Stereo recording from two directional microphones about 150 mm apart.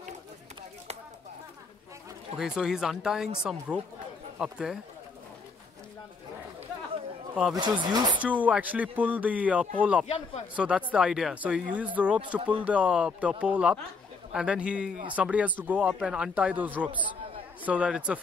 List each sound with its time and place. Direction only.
2.3 s speech: 5° right (ahead or behind)
7.5 s speech: 30° right (ahead or behind)
8.2 s speech: 10° right (ahead or behind)
10.0 s speech: 40° left (ahead or behind)
10.5 s speech: 5° right (ahead or behind)